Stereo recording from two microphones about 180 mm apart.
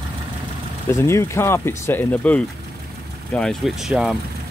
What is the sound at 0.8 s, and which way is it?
Speech, 15° left (ahead or behind).